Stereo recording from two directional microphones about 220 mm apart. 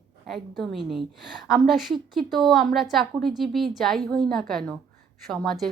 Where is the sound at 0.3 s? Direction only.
Centre (ahead or behind).